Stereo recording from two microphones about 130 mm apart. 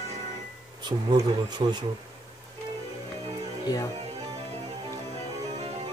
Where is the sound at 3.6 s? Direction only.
25° left (ahead or behind).